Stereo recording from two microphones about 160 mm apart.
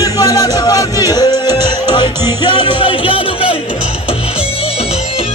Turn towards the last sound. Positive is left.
turn(degrees=35)  # may be behind; listen again after turning